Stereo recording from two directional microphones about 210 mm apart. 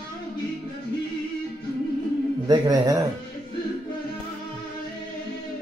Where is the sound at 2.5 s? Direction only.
20° right (ahead or behind).